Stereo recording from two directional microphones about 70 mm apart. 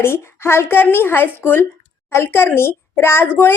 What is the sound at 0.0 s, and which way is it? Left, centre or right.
A woman's voice, left.